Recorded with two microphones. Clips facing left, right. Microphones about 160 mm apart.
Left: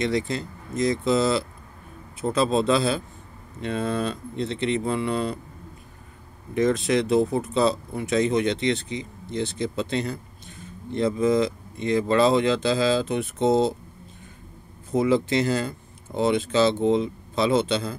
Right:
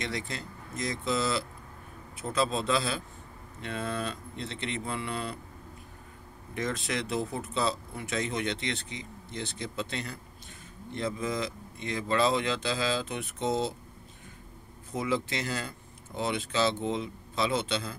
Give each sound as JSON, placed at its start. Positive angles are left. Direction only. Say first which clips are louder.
{"t": 0.0, "sound": "speech", "louder": "left 11 dB", "side_deg": 25}
{"t": 6.5, "sound": "speech", "louder": "left 11 dB", "side_deg": 20}
{"t": 15.0, "sound": "speech", "louder": "left 10 dB", "side_deg": 30}